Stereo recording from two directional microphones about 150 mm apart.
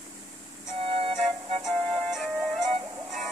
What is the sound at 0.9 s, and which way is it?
Music, 40° right (ahead or behind).